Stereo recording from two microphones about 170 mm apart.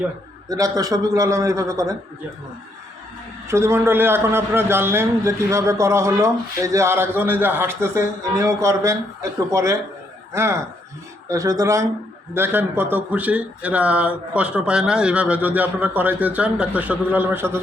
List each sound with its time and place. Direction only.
0.4 s a man's voice: 20° right (ahead or behind)
3.5 s a man's voice: 15° right (ahead or behind)